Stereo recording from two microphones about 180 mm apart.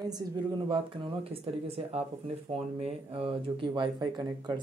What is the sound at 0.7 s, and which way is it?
Speech, 30° right (ahead or behind).